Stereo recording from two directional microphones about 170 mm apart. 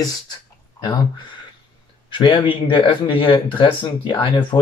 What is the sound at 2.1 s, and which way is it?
Speech, 30° left (ahead or behind).